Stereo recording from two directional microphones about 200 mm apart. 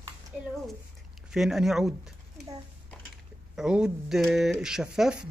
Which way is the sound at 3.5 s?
5° right (ahead or behind).